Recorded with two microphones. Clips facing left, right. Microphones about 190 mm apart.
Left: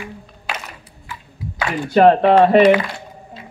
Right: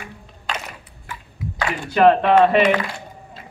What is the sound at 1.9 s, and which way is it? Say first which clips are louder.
Music: left 3 dB; 40° left (ahead or behind).